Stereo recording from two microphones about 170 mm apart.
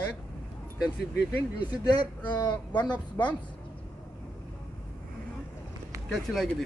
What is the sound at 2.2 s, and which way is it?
Speech, 25° left (ahead or behind).